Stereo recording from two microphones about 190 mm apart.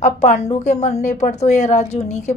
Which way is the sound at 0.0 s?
35° left (ahead or behind).